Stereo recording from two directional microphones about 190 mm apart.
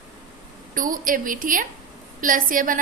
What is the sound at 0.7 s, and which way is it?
A woman's voice, 45° right (ahead or behind).